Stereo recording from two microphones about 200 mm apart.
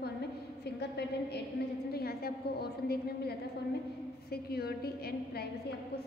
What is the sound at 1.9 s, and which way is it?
A woman's voice, 50° left (ahead or behind).